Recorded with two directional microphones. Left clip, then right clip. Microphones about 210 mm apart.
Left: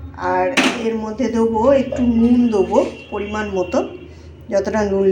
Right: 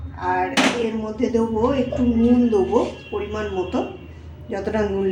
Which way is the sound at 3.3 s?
15° left (ahead or behind).